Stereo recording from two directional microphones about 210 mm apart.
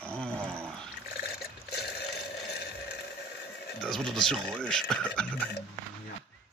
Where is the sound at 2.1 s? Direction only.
50° left (ahead or behind).